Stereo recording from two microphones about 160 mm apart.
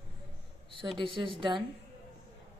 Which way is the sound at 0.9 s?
30° right (ahead or behind).